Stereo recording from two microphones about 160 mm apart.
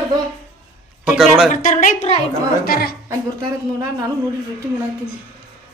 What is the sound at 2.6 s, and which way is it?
Speech, 70° left (ahead or behind).